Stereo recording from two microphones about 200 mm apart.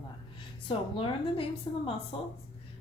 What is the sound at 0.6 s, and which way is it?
A woman's voice, 25° left (ahead or behind).